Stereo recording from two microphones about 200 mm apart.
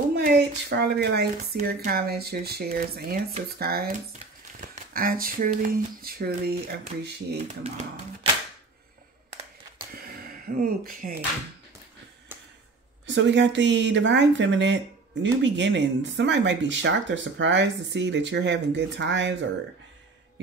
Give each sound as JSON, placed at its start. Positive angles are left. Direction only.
{"t": 0.1, "sound": "speech", "side_deg": -55}
{"t": 7.3, "sound": "speech", "side_deg": -35}
{"t": 9.9, "sound": "a sound", "side_deg": -45}
{"t": 13.0, "sound": "speech", "side_deg": -60}